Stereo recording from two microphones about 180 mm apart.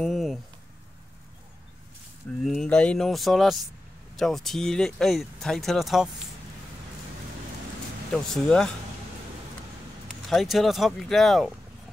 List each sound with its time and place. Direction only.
0.0 s a sound: centre (ahead or behind)
2.4 s speech: 5° left (ahead or behind)
8.1 s speech: 5° left (ahead or behind)
10.3 s speech: centre (ahead or behind)